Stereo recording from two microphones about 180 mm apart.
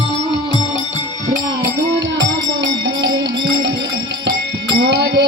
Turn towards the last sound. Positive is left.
turn(degrees=-75)  # may be behind; listen again after turning